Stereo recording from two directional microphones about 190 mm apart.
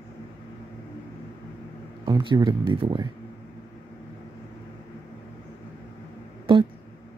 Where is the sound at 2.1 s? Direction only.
25° right (ahead or behind).